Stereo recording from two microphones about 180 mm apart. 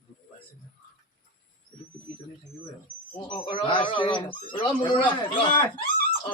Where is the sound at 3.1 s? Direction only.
25° left (ahead or behind).